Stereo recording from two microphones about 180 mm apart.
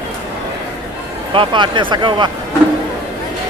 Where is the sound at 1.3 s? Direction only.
25° right (ahead or behind).